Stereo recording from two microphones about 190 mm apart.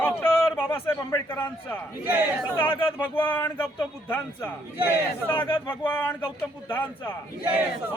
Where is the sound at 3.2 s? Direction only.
10° left (ahead or behind).